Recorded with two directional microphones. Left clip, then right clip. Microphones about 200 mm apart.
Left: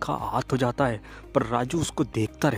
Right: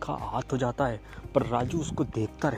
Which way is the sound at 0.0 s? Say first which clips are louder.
Left 5 dB; 25° left (ahead or behind).